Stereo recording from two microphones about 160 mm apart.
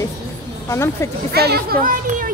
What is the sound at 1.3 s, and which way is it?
A child's voice, 85° right.